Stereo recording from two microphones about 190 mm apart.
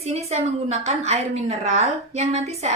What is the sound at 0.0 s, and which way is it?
A woman's voice, 35° right (ahead or behind).